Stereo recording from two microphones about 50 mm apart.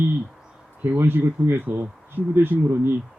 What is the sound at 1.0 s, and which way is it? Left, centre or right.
Speech, right.